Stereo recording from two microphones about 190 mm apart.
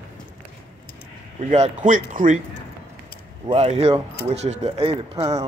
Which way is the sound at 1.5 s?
40° right (ahead or behind).